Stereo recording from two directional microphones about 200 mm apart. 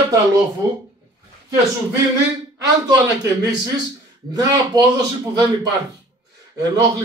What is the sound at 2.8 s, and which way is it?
A man's voice, 15° right (ahead or behind).